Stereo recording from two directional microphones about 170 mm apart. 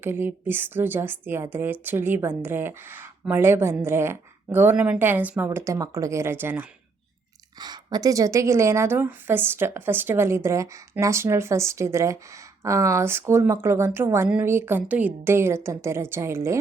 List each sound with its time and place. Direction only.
0.0 s a woman's voice: 15° right (ahead or behind)
7.6 s a woman's voice: 25° right (ahead or behind)